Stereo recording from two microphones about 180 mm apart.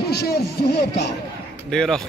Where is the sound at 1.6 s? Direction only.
Centre (ahead or behind).